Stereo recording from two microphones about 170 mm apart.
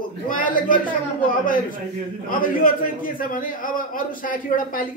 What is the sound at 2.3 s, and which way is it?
A man's voice, 55° left (ahead or behind).